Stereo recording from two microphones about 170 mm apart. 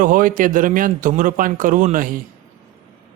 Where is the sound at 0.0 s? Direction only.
55° right (ahead or behind).